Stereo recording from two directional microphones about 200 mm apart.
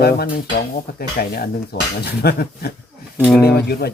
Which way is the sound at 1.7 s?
55° left (ahead or behind).